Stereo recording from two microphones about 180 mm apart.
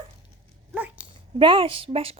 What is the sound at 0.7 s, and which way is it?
Dog, 10° right (ahead or behind).